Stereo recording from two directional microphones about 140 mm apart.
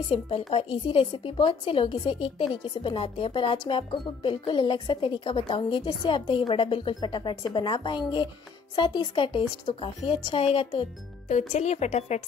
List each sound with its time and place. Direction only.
0.1 s speech: 45° left (ahead or behind)
11.2 s speech: 55° left (ahead or behind)